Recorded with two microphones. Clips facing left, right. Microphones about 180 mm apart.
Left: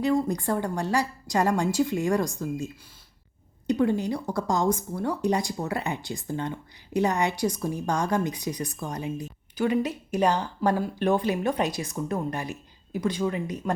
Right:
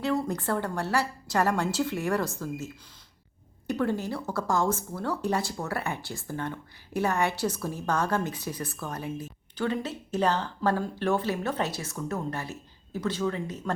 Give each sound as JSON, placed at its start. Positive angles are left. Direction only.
{"t": 0.0, "sound": "speech", "side_deg": 15}
{"t": 3.7, "sound": "speech", "side_deg": 15}